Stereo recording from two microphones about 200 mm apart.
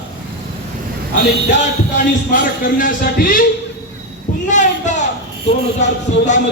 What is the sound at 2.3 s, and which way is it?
Speech, 40° left (ahead or behind).